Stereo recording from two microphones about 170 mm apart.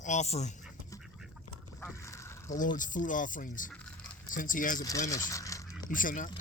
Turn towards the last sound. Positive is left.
turn(degrees=50)  # may be behind; listen again after turning